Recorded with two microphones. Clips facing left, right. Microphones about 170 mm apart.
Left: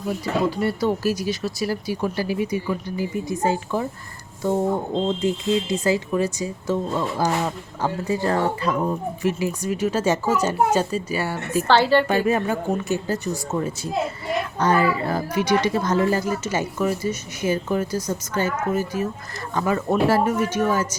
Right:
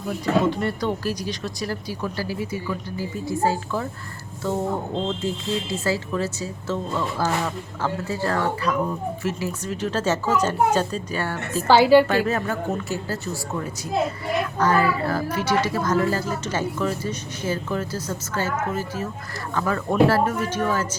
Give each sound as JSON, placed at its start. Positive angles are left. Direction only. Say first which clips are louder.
{"t": 0.5, "sound": "speech", "louder": "left 3 dB", "side_deg": 10}
{"t": 5.0, "sound": "speech", "louder": "left 4 dB", "side_deg": 15}
{"t": 11.7, "sound": "a woman's voice", "louder": "right 4 dB", "side_deg": -10}
{"t": 12.0, "sound": "speech", "louder": "left 2 dB", "side_deg": 15}
{"t": 14.6, "sound": "speech", "louder": "left 1 dB", "side_deg": 20}